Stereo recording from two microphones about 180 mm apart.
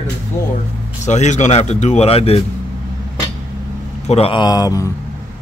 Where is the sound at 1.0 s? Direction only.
40° left (ahead or behind).